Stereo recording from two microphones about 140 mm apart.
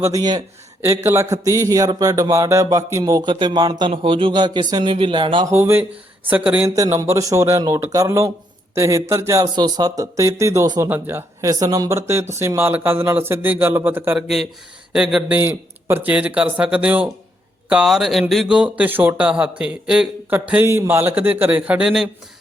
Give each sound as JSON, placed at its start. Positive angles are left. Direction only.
{"t": 0.0, "sound": "speech", "side_deg": -25}
{"t": 5.5, "sound": "speech", "side_deg": -15}
{"t": 6.7, "sound": "speech", "side_deg": -25}
{"t": 14.2, "sound": "speech", "side_deg": 0}